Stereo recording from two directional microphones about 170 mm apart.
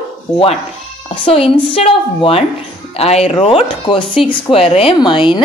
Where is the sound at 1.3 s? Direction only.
35° left (ahead or behind).